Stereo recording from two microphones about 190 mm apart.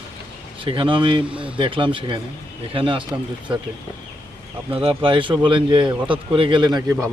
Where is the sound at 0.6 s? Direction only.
25° right (ahead or behind).